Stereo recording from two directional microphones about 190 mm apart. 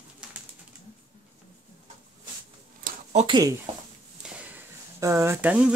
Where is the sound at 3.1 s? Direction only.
35° right (ahead or behind).